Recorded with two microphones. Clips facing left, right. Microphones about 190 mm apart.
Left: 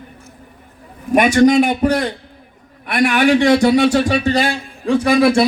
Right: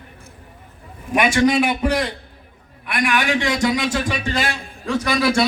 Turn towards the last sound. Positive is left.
turn(degrees=30)  # may be behind; listen again after turning